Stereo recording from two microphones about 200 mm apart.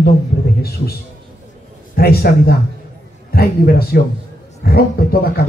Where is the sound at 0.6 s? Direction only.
50° left (ahead or behind).